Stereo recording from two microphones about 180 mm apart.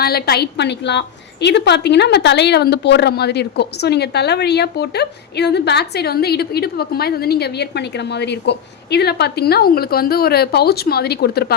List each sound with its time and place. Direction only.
0.0 s a woman's voice: 60° left (ahead or behind)